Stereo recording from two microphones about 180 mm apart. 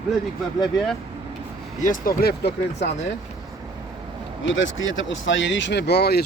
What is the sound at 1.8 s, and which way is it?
Speech, 50° left (ahead or behind).